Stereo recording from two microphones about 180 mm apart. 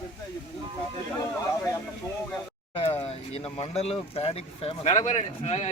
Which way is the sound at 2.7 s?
35° left (ahead or behind).